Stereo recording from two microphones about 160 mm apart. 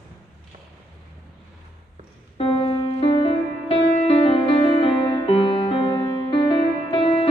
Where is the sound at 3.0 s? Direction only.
35° left (ahead or behind).